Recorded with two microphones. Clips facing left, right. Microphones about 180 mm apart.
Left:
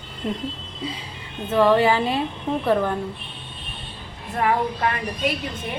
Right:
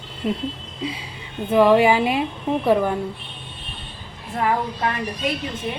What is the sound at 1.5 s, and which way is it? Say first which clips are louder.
A woman's voice: right 2 dB; 10° right (ahead or behind).